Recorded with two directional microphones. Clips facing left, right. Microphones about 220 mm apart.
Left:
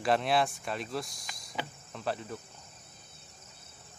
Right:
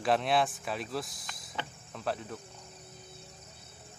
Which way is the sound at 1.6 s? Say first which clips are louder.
Left 1 dB; centre (ahead or behind).